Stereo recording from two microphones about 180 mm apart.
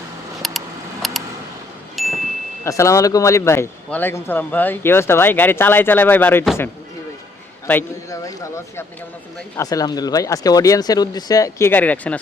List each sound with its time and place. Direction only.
0.4 s a sound: centre (ahead or behind)
2.0 s chime: centre (ahead or behind)
2.6 s speech: 15° left (ahead or behind)
7.7 s speech: 15° left (ahead or behind)